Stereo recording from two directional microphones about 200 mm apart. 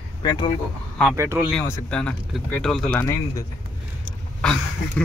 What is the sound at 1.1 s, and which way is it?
Speech, 15° right (ahead or behind).